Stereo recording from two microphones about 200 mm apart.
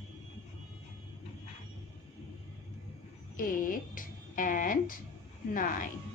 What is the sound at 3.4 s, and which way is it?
Speech, 45° left (ahead or behind).